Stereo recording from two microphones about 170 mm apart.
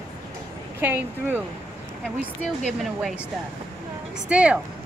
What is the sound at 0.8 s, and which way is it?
Speech, 10° right (ahead or behind).